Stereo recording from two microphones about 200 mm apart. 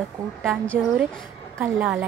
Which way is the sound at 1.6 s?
10° right (ahead or behind).